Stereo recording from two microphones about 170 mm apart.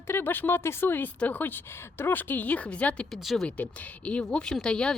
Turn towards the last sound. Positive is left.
turn(degrees=5)  # may be behind; listen again after turning